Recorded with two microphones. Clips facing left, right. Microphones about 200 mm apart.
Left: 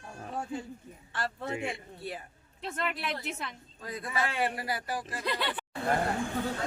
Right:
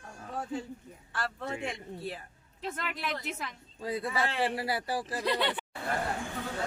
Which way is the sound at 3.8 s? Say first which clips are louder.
Right 2 dB; 30° right (ahead or behind).